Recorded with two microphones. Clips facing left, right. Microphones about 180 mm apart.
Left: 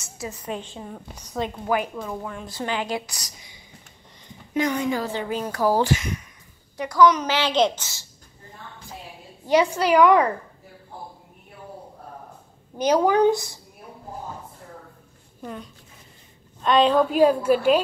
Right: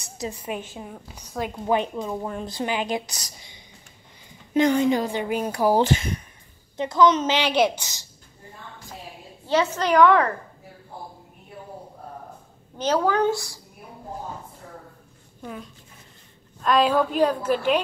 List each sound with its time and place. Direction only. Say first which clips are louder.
0.2 s a woman's voice: right 1 dB; 15° right (ahead or behind)
1.7 s speech: right 4 dB; 20° right (ahead or behind)
4.6 s a woman's voice: right 4 dB; 25° right (ahead or behind)
9.5 s a woman's voice: left 2 dB; 10° left (ahead or behind)
12.7 s a woman's voice: left 3 dB; 15° left (ahead or behind)
15.4 s a woman's voice: left 1 dB; centre (ahead or behind)
17.1 s a woman's voice: left 4 dB; 10° left (ahead or behind)